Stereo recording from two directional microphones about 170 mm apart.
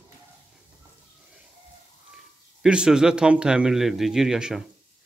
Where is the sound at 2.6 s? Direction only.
5° right (ahead or behind).